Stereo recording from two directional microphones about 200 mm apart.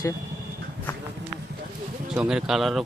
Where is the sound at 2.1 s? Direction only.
5° right (ahead or behind).